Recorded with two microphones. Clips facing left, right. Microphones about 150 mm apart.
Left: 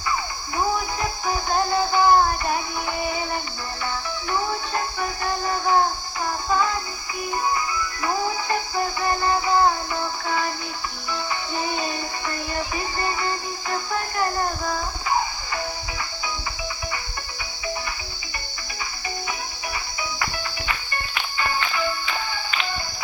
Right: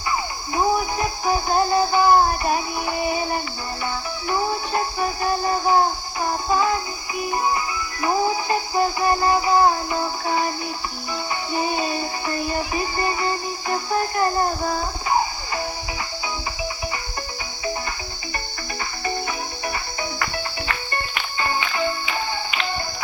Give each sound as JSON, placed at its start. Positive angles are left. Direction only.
{"t": 0.5, "sound": "music", "side_deg": -20}
{"t": 4.3, "sound": "music", "side_deg": -20}
{"t": 11.5, "sound": "music", "side_deg": -20}
{"t": 19.6, "sound": "cricket", "side_deg": -45}
{"t": 20.9, "sound": "music", "side_deg": -30}
{"t": 22.5, "sound": "music", "side_deg": -15}